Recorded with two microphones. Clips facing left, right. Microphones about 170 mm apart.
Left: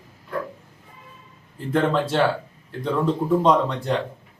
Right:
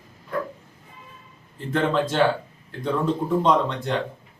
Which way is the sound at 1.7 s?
Centre (ahead or behind).